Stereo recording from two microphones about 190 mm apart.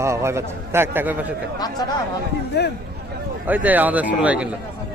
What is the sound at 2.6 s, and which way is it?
Speech, 60° left (ahead or behind).